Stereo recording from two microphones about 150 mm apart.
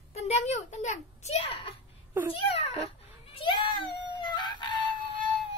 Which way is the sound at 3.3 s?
35° left (ahead or behind).